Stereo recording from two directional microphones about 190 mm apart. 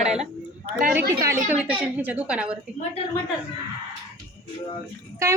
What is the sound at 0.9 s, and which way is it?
A woman's voice, 10° right (ahead or behind).